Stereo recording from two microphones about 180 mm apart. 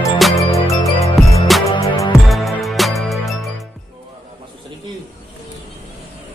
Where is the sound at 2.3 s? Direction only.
Centre (ahead or behind).